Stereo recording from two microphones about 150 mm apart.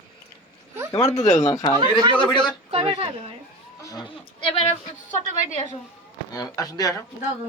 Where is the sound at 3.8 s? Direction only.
20° left (ahead or behind).